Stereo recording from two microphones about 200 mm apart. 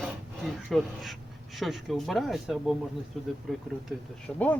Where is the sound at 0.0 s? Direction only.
Centre (ahead or behind).